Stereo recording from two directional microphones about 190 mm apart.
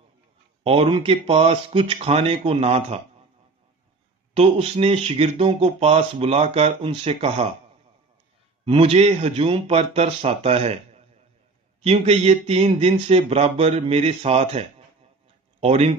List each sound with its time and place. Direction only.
0.7 s speech: 30° right (ahead or behind)
4.3 s speech: 30° right (ahead or behind)
8.6 s speech: 30° right (ahead or behind)